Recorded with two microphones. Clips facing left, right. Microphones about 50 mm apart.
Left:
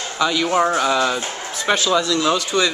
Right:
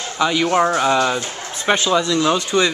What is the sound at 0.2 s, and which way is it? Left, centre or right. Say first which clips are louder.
Speech: right 2 dB; centre.